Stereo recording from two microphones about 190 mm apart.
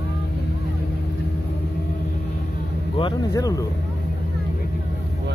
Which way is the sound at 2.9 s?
20° left (ahead or behind).